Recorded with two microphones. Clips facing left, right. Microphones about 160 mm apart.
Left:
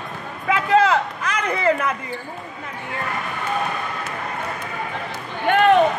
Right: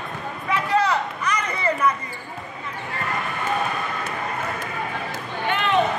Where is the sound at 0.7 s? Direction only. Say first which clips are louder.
Left 5 dB; 90° left.